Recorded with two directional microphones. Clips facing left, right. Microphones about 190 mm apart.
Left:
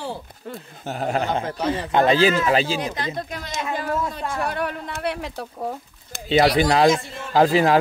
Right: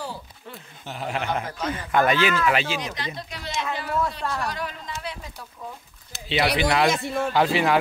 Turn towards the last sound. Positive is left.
turn(degrees=40)  # may be behind; listen again after turning